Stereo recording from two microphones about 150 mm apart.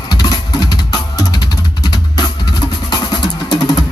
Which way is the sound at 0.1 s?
25° left (ahead or behind).